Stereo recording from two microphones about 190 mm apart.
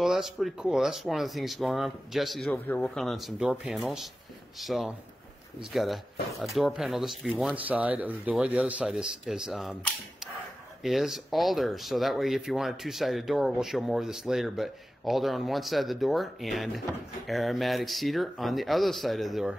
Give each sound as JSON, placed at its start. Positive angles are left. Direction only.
{"t": 0.0, "sound": "speech", "side_deg": 0}
{"t": 10.8, "sound": "speech", "side_deg": 0}